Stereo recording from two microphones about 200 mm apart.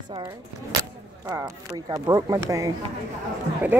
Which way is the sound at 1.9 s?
20° right (ahead or behind).